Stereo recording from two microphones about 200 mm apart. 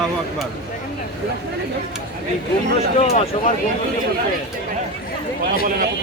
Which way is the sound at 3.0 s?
35° left (ahead or behind).